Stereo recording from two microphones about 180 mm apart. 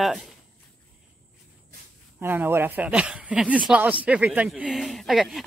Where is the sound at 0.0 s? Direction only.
Centre (ahead or behind).